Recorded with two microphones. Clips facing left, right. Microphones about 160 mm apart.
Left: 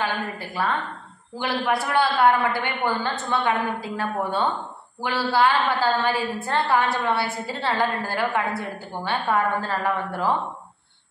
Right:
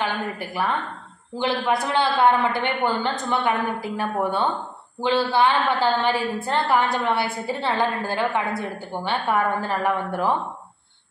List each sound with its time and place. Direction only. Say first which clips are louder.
0.0 s a woman's voice: right 1 dB; 15° right (ahead or behind)